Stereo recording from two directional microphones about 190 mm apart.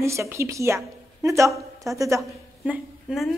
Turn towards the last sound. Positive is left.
turn(degrees=-5)  # may be behind; listen again after turning